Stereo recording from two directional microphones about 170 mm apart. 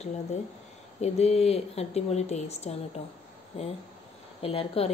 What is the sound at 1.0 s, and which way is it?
Speech, 40° left (ahead or behind).